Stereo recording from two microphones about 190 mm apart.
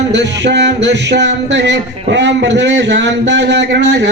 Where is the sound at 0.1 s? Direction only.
65° right (ahead or behind).